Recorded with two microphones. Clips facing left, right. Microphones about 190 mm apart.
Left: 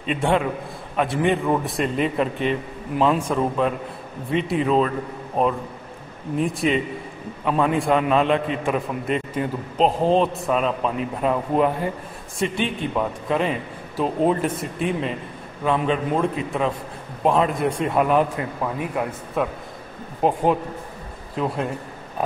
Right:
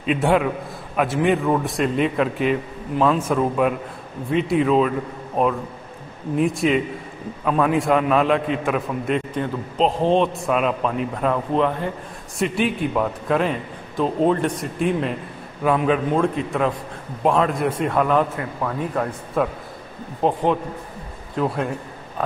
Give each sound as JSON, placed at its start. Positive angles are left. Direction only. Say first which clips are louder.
{"t": 0.0, "sound": "a man's voice", "louder": "right 2 dB", "side_deg": -5}
{"t": 6.3, "sound": "a man's voice", "louder": "right 2 dB", "side_deg": 0}
{"t": 12.4, "sound": "a man's voice", "louder": "right 3 dB", "side_deg": -5}
{"t": 17.9, "sound": "a man's voice", "louder": "left 1 dB", "side_deg": 15}
{"t": 19.4, "sound": "a man's voice", "louder": "right 2 dB", "side_deg": 5}